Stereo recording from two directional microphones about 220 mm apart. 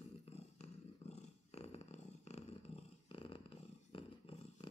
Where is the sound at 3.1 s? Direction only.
25° left (ahead or behind).